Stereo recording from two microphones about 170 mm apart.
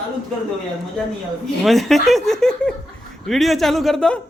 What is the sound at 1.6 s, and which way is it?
A man's voice, centre (ahead or behind).